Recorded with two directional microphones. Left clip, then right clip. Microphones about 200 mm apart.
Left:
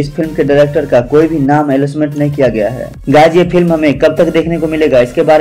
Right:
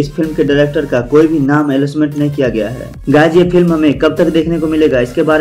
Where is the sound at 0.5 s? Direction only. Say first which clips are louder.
Left 6 dB; 20° left (ahead or behind).